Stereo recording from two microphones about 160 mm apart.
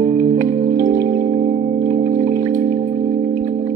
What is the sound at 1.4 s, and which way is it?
Music, 35° right (ahead or behind).